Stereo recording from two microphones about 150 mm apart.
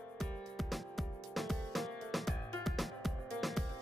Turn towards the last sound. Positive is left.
turn(degrees=0)  # may be behind; listen again after turning